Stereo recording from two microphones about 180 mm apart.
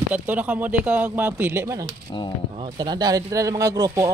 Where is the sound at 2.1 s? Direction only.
25° left (ahead or behind).